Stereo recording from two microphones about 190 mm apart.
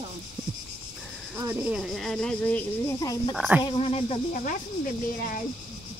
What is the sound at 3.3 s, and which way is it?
Speech, 5° right (ahead or behind).